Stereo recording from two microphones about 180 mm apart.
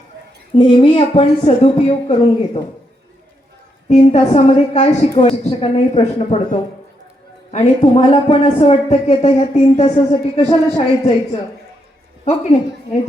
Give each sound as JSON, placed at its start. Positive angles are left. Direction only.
{"t": 0.6, "sound": "a woman's voice", "side_deg": 30}
{"t": 3.8, "sound": "a woman's voice", "side_deg": 40}
{"t": 8.1, "sound": "a woman's voice", "side_deg": 25}
{"t": 12.2, "sound": "a woman's voice", "side_deg": 35}